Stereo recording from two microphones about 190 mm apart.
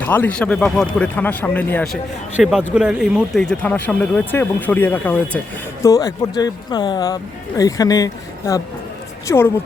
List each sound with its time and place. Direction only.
0.0 s speech: 10° left (ahead or behind)